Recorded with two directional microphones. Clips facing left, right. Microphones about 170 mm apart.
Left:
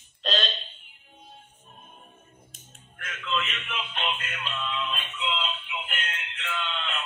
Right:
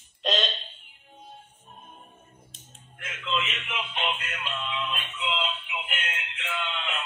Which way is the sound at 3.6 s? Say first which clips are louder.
Right 1 dB; 10° right (ahead or behind).